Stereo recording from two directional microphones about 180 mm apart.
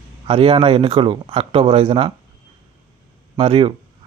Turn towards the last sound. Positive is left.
turn(degrees=-30)  # may be behind; listen again after turning